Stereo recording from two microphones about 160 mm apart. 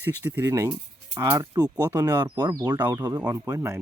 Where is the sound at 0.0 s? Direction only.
10° right (ahead or behind).